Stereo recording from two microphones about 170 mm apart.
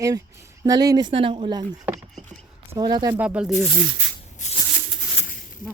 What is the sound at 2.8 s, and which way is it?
Speech, 25° right (ahead or behind).